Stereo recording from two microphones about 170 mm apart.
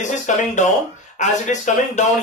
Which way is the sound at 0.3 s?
45° left (ahead or behind).